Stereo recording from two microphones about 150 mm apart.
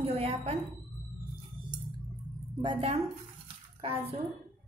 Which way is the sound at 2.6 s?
35° right (ahead or behind).